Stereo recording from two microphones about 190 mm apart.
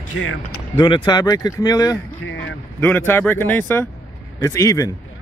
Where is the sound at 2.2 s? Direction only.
75° left (ahead or behind).